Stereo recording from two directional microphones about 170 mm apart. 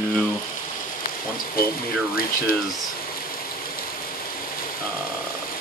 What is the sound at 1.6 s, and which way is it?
Speech, 60° left (ahead or behind).